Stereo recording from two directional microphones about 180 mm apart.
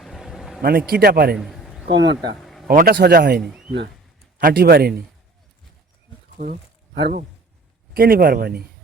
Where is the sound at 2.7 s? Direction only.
45° right (ahead or behind).